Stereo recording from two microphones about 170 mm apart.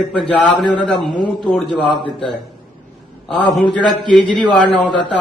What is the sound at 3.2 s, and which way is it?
Speech, 5° left (ahead or behind).